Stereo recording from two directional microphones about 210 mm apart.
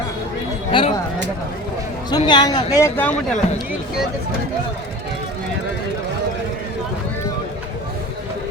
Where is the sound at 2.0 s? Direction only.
20° left (ahead or behind).